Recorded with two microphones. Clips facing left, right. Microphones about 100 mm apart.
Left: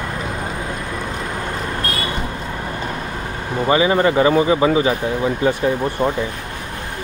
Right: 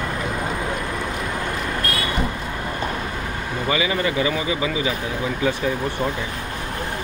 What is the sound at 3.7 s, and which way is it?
Speech, 40° left (ahead or behind).